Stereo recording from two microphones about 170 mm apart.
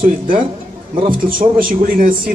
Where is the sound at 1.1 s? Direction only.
55° right (ahead or behind).